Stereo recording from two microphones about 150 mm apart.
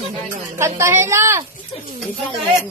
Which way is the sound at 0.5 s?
15° right (ahead or behind).